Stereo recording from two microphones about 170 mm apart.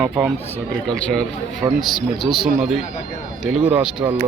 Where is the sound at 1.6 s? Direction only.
15° right (ahead or behind).